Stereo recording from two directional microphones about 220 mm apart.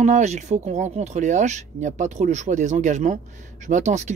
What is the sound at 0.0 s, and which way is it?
Speech, 30° right (ahead or behind).